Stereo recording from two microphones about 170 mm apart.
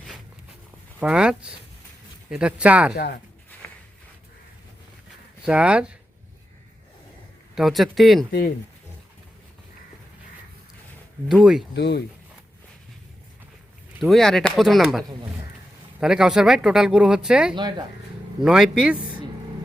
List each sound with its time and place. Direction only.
0.9 s speech: 5° right (ahead or behind)
2.9 s speech: 75° left (ahead or behind)
3.6 s a sound: 10° left (ahead or behind)
5.4 s speech: 5° right (ahead or behind)
7.5 s speech: centre (ahead or behind)
8.3 s speech: 60° left (ahead or behind)
11.3 s speech: 5° right (ahead or behind)
11.7 s speech: 85° left
14.0 s speech: centre (ahead or behind)
17.5 s speech: 25° right (ahead or behind)
18.4 s speech: 5° right (ahead or behind)